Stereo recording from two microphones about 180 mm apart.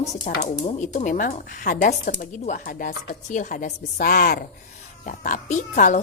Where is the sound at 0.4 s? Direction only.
40° left (ahead or behind).